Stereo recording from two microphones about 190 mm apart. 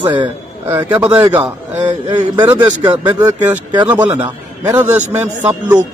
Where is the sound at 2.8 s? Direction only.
25° right (ahead or behind).